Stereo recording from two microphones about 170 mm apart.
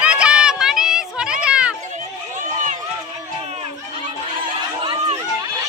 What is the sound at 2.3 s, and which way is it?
Run, 50° right (ahead or behind).